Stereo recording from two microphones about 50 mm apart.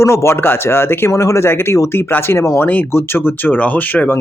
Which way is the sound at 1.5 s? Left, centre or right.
Left.